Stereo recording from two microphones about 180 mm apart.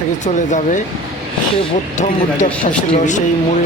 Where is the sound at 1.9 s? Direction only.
40° left (ahead or behind).